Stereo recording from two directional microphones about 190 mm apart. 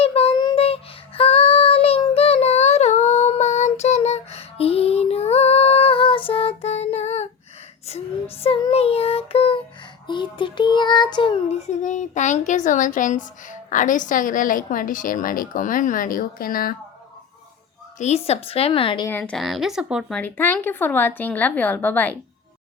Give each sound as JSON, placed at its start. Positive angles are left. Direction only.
{"t": 0.0, "sound": "child singing", "side_deg": 30}
{"t": 11.8, "sound": "a woman's voice", "side_deg": 40}
{"t": 17.9, "sound": "speech", "side_deg": 35}
{"t": 19.0, "sound": "speech", "side_deg": 10}